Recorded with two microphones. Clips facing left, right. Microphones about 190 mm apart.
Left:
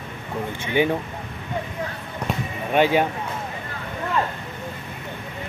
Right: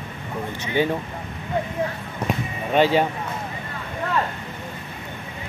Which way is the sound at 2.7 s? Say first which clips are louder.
Even; 15° left (ahead or behind).